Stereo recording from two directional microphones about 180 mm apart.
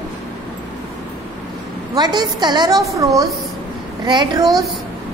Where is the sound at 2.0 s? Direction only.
25° right (ahead or behind).